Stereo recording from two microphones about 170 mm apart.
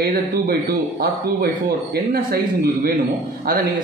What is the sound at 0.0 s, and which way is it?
A man's voice, 60° right (ahead or behind).